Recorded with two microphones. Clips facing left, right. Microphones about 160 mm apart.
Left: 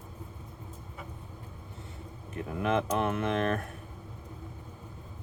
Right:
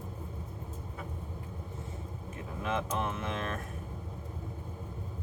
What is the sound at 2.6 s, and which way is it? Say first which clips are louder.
Speech: left 5 dB; 60° left (ahead or behind).